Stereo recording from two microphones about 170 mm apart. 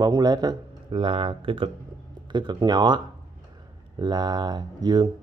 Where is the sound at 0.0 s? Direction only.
25° right (ahead or behind).